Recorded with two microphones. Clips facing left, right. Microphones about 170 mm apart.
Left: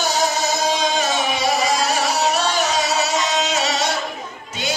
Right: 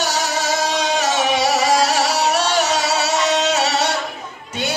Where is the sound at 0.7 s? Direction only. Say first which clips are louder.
Right 1 dB; 75° right (ahead or behind).